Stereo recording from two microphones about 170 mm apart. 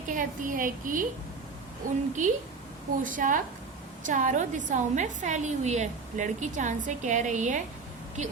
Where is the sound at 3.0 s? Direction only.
50° right (ahead or behind).